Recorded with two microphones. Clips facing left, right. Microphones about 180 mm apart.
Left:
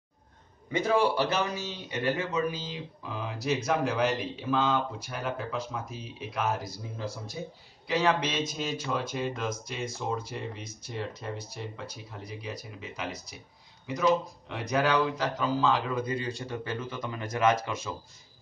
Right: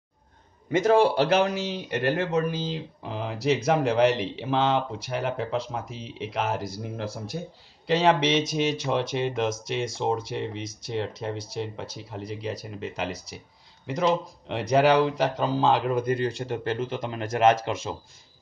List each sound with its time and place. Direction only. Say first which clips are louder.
1.1 s speech: right 7 dB; 70° right (ahead or behind)